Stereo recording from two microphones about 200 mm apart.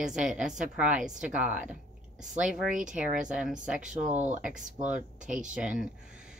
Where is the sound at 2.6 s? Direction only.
40° right (ahead or behind).